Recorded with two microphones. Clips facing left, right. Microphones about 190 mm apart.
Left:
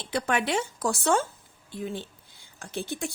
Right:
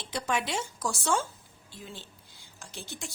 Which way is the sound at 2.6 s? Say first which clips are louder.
Left 10 dB; 55° left (ahead or behind).